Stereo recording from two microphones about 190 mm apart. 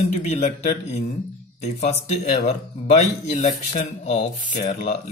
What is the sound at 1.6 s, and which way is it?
Speech, 35° left (ahead or behind).